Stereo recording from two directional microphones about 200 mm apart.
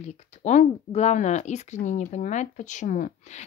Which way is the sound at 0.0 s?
35° left (ahead or behind).